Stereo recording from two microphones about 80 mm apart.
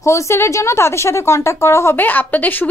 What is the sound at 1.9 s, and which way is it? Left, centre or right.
Speech, left.